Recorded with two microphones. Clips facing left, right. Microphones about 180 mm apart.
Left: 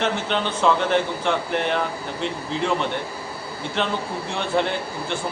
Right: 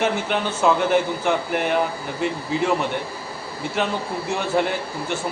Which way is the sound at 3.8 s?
5° right (ahead or behind).